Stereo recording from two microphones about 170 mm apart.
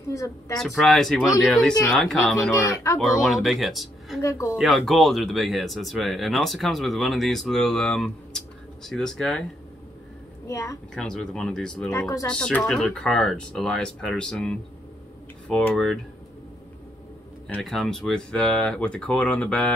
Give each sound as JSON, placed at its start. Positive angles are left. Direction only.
{"t": 0.1, "sound": "speech", "side_deg": 20}
{"t": 0.6, "sound": "speech", "side_deg": 0}
{"t": 2.5, "sound": "speech", "side_deg": 20}
{"t": 3.0, "sound": "speech", "side_deg": 0}
{"t": 4.2, "sound": "speech", "side_deg": 20}
{"t": 4.6, "sound": "speech", "side_deg": 0}
{"t": 10.4, "sound": "speech", "side_deg": 20}
{"t": 11.0, "sound": "speech", "side_deg": 5}
{"t": 11.9, "sound": "speech", "side_deg": 20}
{"t": 12.3, "sound": "speech", "side_deg": 5}
{"t": 17.6, "sound": "speech", "side_deg": 0}